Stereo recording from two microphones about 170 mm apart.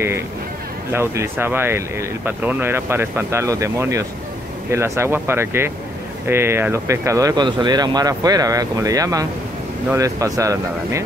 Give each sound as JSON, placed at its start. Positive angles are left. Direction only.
{"t": 0.9, "sound": "speech", "side_deg": -15}